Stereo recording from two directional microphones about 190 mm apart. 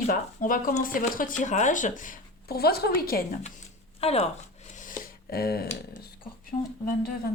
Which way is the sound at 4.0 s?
35° left (ahead or behind).